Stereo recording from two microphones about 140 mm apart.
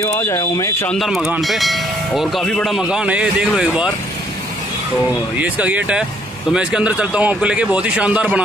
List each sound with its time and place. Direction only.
0.0 s speech: 20° left (ahead or behind)
0.9 s speech: centre (ahead or behind)
5.4 s a man's voice: 10° right (ahead or behind)